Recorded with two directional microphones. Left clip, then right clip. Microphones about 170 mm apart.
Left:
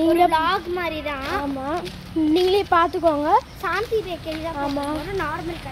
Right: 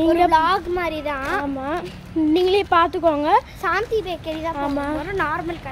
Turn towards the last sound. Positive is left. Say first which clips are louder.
# right 3 dB
turn(degrees=-20)  # may be behind; listen again after turning